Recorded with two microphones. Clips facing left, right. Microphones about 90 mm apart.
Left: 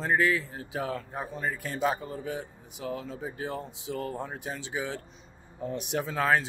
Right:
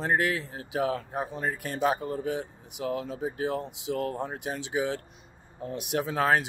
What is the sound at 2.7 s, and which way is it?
Speech, 65° right (ahead or behind).